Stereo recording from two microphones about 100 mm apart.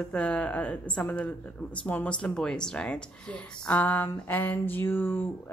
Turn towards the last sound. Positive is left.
turn(degrees=20)  # may be behind; listen again after turning